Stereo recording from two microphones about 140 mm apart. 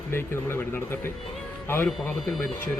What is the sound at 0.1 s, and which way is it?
Speech, 20° left (ahead or behind).